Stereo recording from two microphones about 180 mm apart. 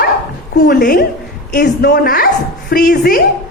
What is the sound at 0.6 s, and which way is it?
A woman's voice, 50° left (ahead or behind).